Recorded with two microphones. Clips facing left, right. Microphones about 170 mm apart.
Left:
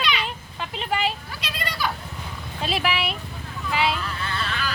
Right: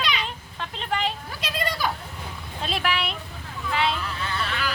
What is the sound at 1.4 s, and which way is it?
Children playing, 45° right (ahead or behind).